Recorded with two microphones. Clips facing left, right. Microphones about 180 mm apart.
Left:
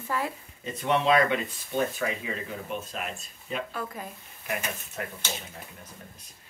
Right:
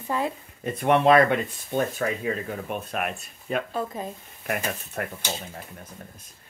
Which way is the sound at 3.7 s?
25° right (ahead or behind).